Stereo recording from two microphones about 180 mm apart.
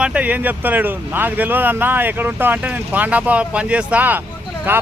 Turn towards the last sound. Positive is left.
turn(degrees=-10)  # may be behind; listen again after turning